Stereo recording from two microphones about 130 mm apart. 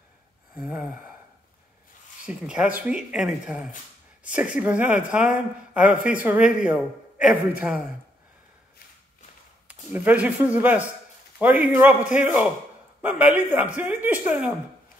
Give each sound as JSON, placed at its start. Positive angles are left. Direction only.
{"t": 0.6, "sound": "speech", "side_deg": -10}
{"t": 2.2, "sound": "speech", "side_deg": -10}
{"t": 9.7, "sound": "speech", "side_deg": -10}